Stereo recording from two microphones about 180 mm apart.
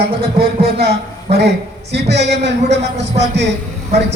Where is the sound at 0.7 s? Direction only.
65° right (ahead or behind).